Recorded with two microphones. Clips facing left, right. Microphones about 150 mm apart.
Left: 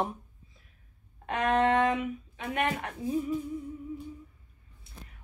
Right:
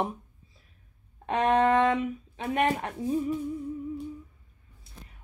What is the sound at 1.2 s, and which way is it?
Speech, 30° right (ahead or behind).